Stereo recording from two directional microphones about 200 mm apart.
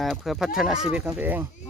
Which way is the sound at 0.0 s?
Centre (ahead or behind).